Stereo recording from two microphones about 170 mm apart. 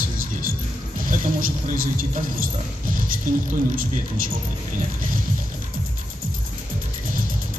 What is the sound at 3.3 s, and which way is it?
Speech, 50° right (ahead or behind).